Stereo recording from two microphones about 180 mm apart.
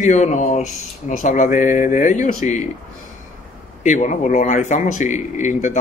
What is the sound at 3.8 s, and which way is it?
A man's voice, 45° left (ahead or behind).